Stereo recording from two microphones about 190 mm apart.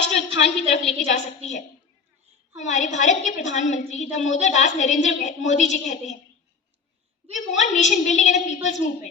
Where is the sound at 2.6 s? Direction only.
40° left (ahead or behind).